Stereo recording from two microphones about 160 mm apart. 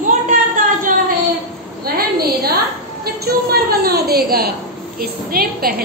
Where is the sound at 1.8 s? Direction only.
70° right (ahead or behind).